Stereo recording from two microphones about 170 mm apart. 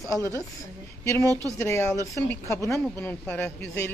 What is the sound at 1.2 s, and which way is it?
Speech, 20° right (ahead or behind).